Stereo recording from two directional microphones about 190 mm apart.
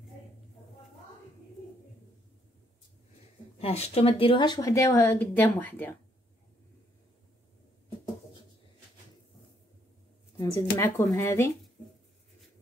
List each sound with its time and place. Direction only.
3.5 s speech: 30° left (ahead or behind); by 5.9 s 10° left (ahead or behind)
10.3 s speech: 20° left (ahead or behind)